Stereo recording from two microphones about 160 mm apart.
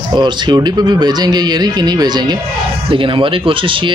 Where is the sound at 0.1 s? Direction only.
25° right (ahead or behind).